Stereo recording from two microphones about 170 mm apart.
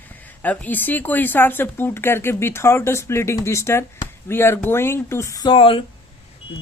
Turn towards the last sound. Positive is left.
turn(degrees=30)  # may be behind; listen again after turning